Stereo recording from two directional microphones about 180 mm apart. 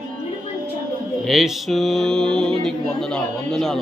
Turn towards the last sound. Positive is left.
turn(degrees=5)  # may be behind; listen again after turning